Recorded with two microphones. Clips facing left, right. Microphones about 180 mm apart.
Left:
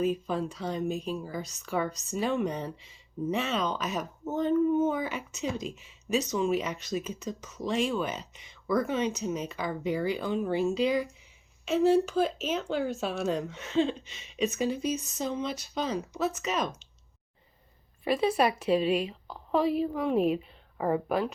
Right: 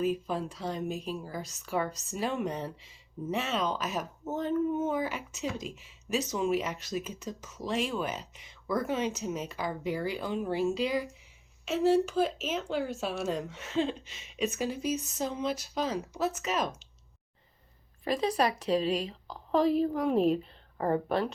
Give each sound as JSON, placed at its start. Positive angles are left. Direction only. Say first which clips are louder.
{"t": 0.0, "sound": "speech", "louder": "left 2 dB", "side_deg": 0}
{"t": 18.0, "sound": "a woman's voice", "louder": "left 3 dB", "side_deg": 10}
{"t": 18.8, "sound": "speech", "louder": "left 3 dB", "side_deg": -35}
{"t": 19.0, "sound": "a woman's voice", "louder": "left 2 dB", "side_deg": 5}